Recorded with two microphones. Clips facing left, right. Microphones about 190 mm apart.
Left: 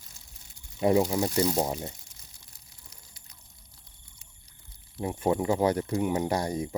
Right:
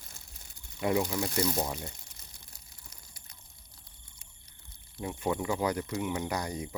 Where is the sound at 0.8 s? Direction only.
35° left (ahead or behind).